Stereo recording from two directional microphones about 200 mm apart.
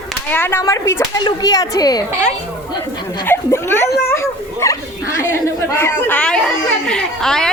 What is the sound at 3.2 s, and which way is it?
Speech, 10° left (ahead or behind).